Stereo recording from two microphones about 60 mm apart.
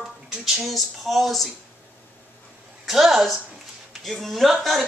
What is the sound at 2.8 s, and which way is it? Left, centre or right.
Speech, centre.